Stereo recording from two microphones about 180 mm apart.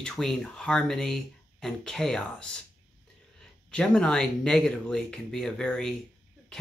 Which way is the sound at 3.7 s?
5° left (ahead or behind).